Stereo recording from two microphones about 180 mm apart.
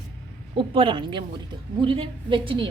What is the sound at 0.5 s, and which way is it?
A woman's voice, 30° right (ahead or behind).